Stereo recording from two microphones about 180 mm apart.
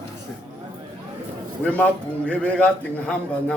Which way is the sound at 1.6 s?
10° left (ahead or behind).